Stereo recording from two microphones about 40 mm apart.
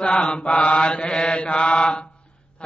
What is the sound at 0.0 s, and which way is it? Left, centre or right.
Mantra, left.